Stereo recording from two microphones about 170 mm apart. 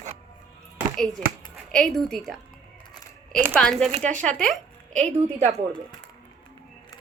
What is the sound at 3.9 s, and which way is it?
Speech, 45° right (ahead or behind).